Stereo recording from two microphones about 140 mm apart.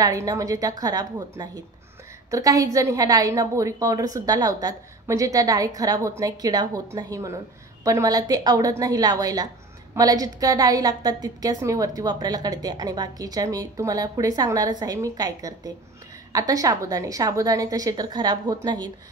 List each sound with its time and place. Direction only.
0.0 s a woman's voice: 25° right (ahead or behind)